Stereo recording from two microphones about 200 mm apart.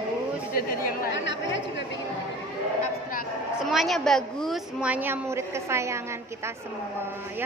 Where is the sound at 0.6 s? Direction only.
55° left (ahead or behind).